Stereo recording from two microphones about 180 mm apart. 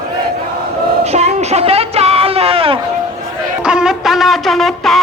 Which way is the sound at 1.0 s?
35° right (ahead or behind).